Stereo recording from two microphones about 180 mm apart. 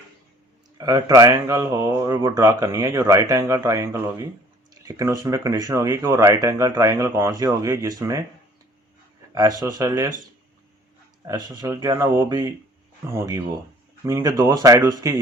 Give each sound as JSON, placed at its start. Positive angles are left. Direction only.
{"t": 0.8, "sound": "speech", "side_deg": -20}
{"t": 9.6, "sound": "speech", "side_deg": -20}
{"t": 11.3, "sound": "speech", "side_deg": -25}